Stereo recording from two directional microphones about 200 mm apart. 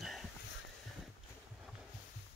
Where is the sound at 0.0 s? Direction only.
Centre (ahead or behind).